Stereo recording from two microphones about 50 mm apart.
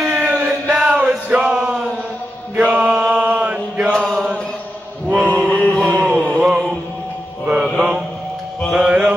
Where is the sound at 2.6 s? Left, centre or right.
Right.